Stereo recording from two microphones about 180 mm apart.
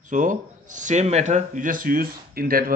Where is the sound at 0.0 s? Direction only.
45° right (ahead or behind).